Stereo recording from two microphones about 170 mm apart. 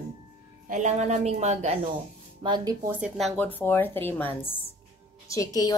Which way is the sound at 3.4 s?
10° left (ahead or behind).